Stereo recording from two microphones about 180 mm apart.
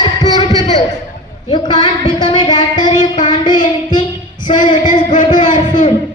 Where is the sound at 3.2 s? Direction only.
25° left (ahead or behind).